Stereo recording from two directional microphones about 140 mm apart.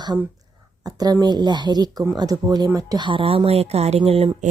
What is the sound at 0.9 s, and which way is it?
Speech, 25° right (ahead or behind).